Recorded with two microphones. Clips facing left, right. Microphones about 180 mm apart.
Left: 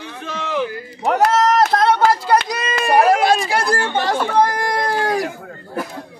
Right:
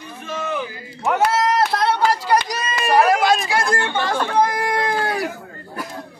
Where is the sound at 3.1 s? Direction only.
30° left (ahead or behind).